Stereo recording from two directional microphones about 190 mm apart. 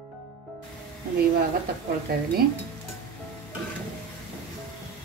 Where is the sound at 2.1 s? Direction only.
55° right (ahead or behind).